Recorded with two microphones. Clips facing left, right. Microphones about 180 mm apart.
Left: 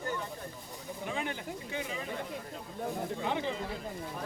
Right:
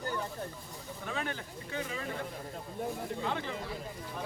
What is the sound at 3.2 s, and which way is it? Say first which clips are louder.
Speech: left 3 dB; 20° left (ahead or behind).